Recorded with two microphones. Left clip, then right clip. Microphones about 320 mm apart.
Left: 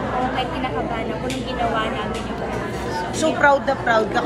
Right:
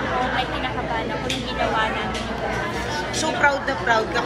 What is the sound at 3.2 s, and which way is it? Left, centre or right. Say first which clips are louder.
A woman's voice: left 4 dB; left.